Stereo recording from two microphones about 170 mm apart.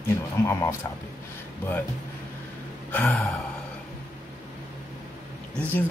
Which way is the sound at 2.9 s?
5° left (ahead or behind).